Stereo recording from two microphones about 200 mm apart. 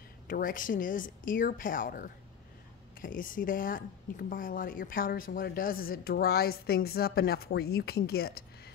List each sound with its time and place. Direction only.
0.3 s a woman's voice: 45° left (ahead or behind)